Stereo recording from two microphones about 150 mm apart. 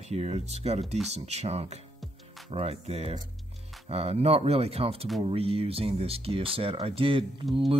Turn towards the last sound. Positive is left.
turn(degrees=-35)  # may be behind; listen again after turning